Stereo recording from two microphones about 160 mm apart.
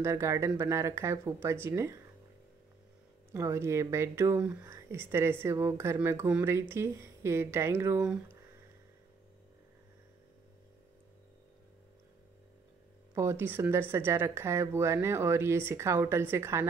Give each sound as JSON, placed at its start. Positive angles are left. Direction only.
{"t": 0.0, "sound": "speech", "side_deg": -15}
{"t": 3.3, "sound": "speech", "side_deg": -20}
{"t": 13.1, "sound": "speech", "side_deg": -15}